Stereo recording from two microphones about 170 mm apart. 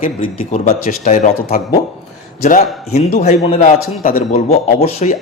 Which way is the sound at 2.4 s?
45° left (ahead or behind).